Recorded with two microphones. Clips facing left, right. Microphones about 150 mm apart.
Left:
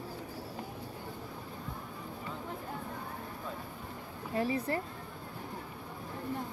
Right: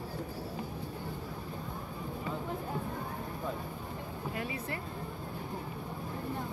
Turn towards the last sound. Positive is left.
turn(degrees=35)  # may be behind; listen again after turning